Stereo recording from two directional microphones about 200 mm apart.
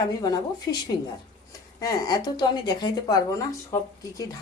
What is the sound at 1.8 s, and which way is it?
Speech, 20° left (ahead or behind).